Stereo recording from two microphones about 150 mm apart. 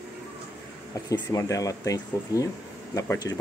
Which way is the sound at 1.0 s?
25° left (ahead or behind).